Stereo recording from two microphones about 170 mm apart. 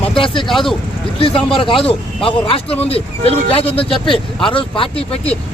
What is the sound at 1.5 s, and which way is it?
Speech, 30° left (ahead or behind).